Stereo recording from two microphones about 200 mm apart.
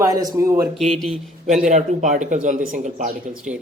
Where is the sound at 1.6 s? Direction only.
35° right (ahead or behind).